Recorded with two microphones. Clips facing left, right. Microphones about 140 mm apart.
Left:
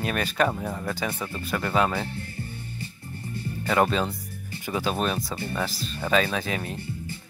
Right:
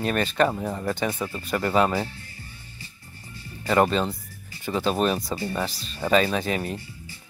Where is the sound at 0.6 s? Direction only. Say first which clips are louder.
Right 3 dB; 5° right (ahead or behind).